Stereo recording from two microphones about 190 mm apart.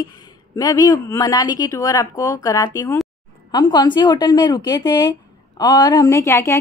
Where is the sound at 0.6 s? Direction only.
20° left (ahead or behind).